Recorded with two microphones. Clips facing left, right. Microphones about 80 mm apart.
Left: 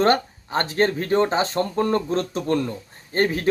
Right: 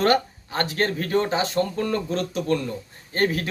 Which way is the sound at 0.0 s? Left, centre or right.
Left.